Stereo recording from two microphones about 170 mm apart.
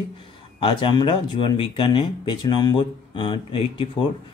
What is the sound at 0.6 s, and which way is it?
Speech, 30° left (ahead or behind).